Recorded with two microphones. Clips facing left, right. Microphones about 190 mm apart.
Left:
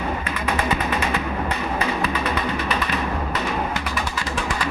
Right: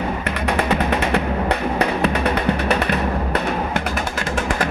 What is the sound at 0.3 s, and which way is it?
Music, 60° right (ahead or behind).